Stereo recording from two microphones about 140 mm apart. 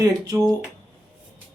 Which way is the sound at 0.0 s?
25° right (ahead or behind).